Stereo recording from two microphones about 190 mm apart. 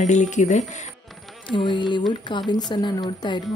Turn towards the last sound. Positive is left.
turn(degrees=25)  # may be behind; listen again after turning